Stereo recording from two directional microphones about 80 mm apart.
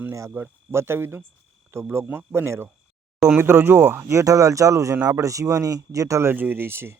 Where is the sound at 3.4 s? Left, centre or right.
Right.